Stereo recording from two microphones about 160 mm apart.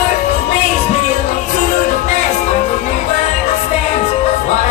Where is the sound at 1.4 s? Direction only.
50° left (ahead or behind).